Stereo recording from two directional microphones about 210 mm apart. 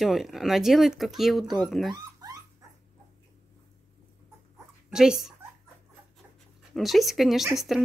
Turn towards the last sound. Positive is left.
turn(degrees=0)  # may be behind; listen again after turning